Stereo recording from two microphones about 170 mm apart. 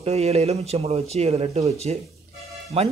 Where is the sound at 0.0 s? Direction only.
40° right (ahead or behind).